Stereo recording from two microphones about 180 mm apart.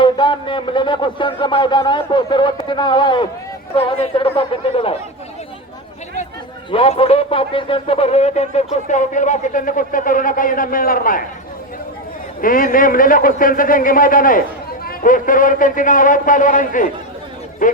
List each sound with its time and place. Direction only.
0.0 s speech: 25° left (ahead or behind)
6.7 s speech: 30° left (ahead or behind); by 11.2 s 50° left (ahead or behind)
12.4 s speech: 50° left (ahead or behind)